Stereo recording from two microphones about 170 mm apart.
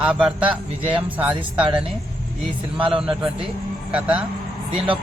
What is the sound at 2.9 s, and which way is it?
A man's voice, 5° right (ahead or behind).